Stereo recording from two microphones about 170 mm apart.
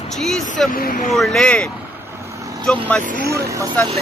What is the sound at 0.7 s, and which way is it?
Speech, 55° left (ahead or behind).